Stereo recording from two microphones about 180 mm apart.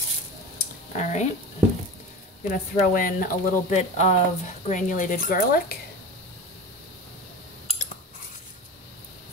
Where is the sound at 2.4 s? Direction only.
45° left (ahead or behind).